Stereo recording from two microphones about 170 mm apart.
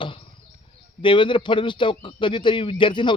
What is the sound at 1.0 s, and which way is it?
A man's voice, 30° left (ahead or behind).